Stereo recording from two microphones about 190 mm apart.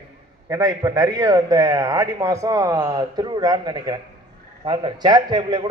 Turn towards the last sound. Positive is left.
turn(degrees=-25)  # may be behind; listen again after turning